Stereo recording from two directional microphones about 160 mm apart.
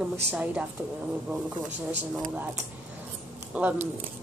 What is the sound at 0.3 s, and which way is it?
Speech, 10° right (ahead or behind).